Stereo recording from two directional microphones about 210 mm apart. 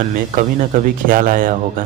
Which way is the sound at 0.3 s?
40° right (ahead or behind).